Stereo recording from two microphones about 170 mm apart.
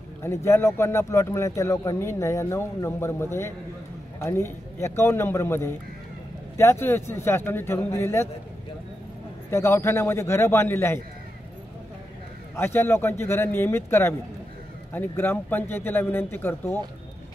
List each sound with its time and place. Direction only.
0.2 s speech: 15° left (ahead or behind)
9.5 s speech: 15° left (ahead or behind)
12.5 s speech: 15° left (ahead or behind)